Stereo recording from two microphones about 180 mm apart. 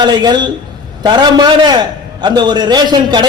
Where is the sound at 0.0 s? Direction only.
25° right (ahead or behind).